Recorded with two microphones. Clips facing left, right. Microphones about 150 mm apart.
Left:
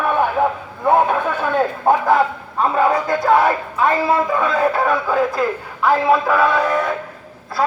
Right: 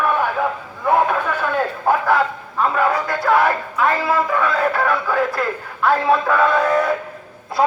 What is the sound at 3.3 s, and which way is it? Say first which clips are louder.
Speech: left 1 dB; 20° left (ahead or behind).